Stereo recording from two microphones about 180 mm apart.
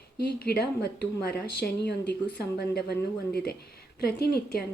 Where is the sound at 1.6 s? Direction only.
65° left (ahead or behind).